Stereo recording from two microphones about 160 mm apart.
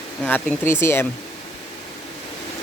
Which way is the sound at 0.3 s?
15° left (ahead or behind).